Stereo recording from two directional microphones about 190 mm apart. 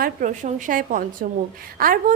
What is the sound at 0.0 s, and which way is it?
A woman's voice, 40° right (ahead or behind).